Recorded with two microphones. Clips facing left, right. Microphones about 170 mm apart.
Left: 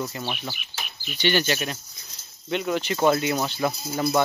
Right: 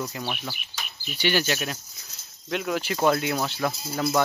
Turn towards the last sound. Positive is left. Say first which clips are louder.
# left 2 dB
turn(degrees=0)  # may be behind; listen again after turning